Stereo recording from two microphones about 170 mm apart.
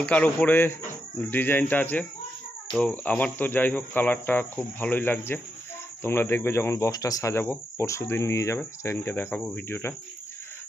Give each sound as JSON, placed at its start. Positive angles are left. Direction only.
{"t": 0.0, "sound": "speech", "side_deg": 5}